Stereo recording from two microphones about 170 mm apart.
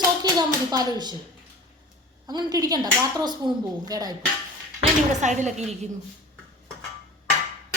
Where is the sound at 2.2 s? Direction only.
25° right (ahead or behind).